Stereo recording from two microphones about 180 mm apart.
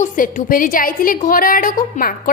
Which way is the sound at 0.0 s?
45° left (ahead or behind).